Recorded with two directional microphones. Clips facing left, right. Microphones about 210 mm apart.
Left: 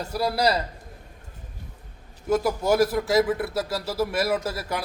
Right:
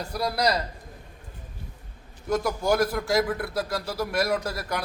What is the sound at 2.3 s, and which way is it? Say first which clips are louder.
Speech: left 2 dB; 5° left (ahead or behind).